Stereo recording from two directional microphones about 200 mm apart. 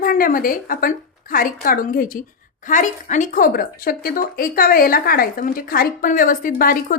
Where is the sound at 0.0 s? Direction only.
45° left (ahead or behind).